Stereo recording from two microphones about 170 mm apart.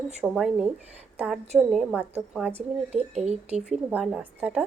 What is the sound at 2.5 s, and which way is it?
Speech, 40° right (ahead or behind).